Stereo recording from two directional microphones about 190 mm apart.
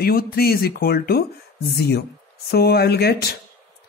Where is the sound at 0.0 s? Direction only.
50° left (ahead or behind).